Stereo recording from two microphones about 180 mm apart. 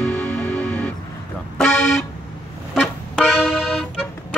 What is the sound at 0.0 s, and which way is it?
Music, 5° left (ahead or behind).